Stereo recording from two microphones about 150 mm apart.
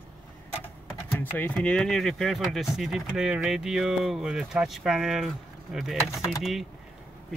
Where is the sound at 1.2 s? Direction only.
10° left (ahead or behind).